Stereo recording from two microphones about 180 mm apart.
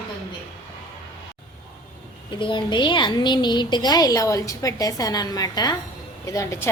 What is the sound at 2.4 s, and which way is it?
A woman's voice, 25° left (ahead or behind).